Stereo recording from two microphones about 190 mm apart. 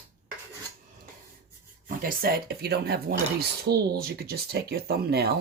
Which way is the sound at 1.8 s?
50° right (ahead or behind).